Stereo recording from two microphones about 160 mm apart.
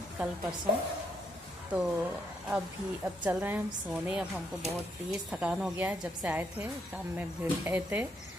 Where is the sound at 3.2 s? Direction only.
10° right (ahead or behind).